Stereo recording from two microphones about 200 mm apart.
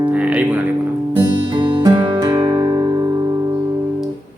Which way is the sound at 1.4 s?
25° right (ahead or behind).